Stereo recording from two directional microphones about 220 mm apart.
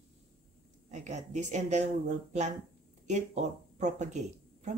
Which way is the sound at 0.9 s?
30° right (ahead or behind).